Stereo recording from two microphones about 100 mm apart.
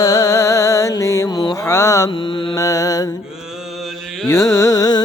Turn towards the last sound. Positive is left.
turn(degrees=40)  # may be behind; listen again after turning